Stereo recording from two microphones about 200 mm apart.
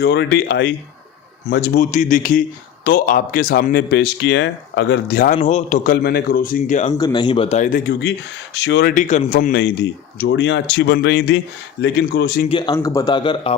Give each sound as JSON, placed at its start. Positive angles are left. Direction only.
{"t": 0.0, "sound": "speech", "side_deg": 55}
{"t": 5.4, "sound": "speech", "side_deg": 35}
{"t": 6.9, "sound": "speech", "side_deg": 20}
{"t": 8.5, "sound": "speech", "side_deg": 60}
{"t": 9.0, "sound": "speech", "side_deg": 35}
{"t": 9.5, "sound": "speech", "side_deg": 55}
{"t": 12.5, "sound": "speech", "side_deg": 25}